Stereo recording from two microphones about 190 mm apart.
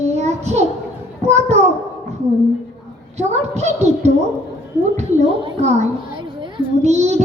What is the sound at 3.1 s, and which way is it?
Speech, 35° right (ahead or behind).